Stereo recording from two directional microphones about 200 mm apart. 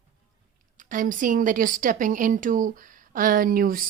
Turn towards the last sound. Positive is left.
turn(degrees=-45)  # may be behind; listen again after turning